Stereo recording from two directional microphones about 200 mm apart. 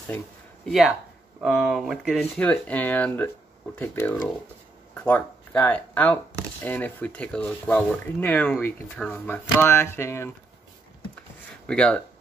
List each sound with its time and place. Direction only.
0.7 s speech: centre (ahead or behind)
11.6 s speech: 5° left (ahead or behind)